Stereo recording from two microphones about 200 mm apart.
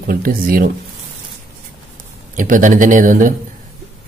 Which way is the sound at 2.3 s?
40° right (ahead or behind).